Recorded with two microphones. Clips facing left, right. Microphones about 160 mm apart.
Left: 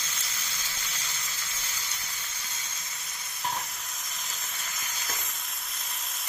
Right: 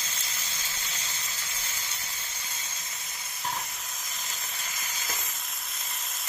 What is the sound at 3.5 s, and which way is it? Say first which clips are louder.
Sizzle: left 1 dB; centre (ahead or behind).